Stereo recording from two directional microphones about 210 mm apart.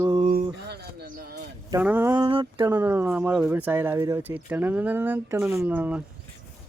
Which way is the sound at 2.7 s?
10° right (ahead or behind).